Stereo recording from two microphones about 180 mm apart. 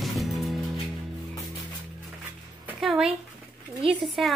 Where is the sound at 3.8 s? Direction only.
30° right (ahead or behind).